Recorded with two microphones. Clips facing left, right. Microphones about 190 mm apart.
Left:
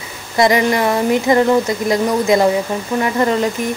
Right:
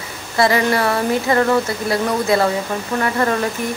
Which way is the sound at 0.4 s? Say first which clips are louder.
Left 2 dB; 15° left (ahead or behind).